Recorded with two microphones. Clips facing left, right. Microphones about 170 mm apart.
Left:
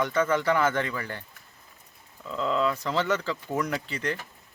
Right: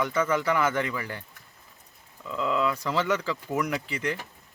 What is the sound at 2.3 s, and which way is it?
Speech, 5° right (ahead or behind).